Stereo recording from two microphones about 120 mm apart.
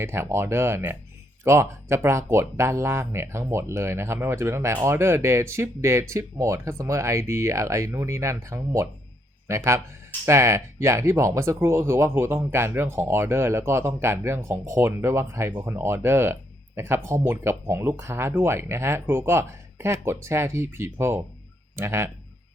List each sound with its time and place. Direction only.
0.0 s speech: 20° right (ahead or behind)